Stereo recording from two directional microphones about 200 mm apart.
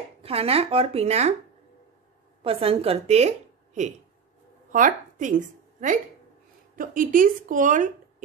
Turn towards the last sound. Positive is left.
turn(degrees=-40)  # may be behind; listen again after turning